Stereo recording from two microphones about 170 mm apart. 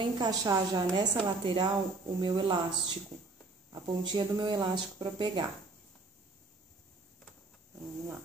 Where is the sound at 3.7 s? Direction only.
25° right (ahead or behind).